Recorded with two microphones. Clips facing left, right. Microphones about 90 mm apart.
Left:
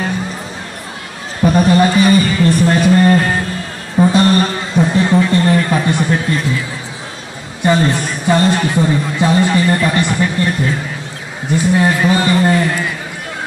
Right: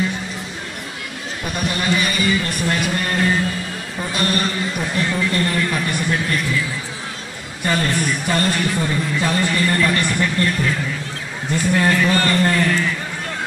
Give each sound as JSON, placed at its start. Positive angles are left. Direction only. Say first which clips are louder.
{"t": 1.4, "sound": "music", "louder": "left 13 dB", "side_deg": 35}
{"t": 7.6, "sound": "a sound", "louder": "left 6 dB", "side_deg": 20}
{"t": 8.7, "sound": "a man's voice", "louder": "left 6 dB", "side_deg": 20}
{"t": 11.5, "sound": "a man's voice", "louder": "left 4 dB", "side_deg": 20}